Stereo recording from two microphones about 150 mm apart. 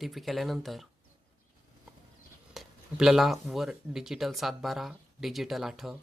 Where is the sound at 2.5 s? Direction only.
Centre (ahead or behind).